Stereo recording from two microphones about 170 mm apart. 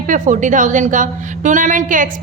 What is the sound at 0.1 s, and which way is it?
A woman's voice, 50° right (ahead or behind).